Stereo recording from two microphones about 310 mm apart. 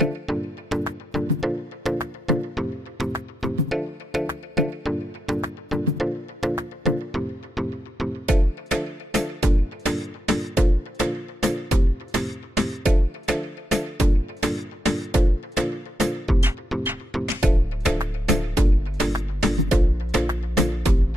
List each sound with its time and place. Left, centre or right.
0.0 s music: centre